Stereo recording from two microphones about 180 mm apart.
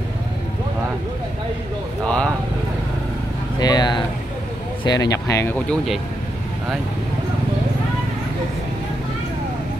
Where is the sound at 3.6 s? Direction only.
20° left (ahead or behind).